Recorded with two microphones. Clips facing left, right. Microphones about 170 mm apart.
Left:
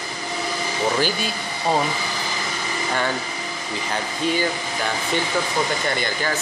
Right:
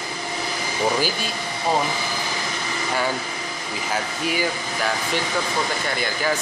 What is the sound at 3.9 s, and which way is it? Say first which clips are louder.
Speech: left 2 dB; 10° right (ahead or behind).